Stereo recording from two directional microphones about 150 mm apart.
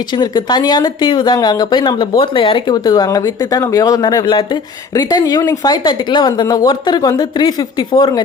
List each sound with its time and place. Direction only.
0.2 s speech: 30° left (ahead or behind)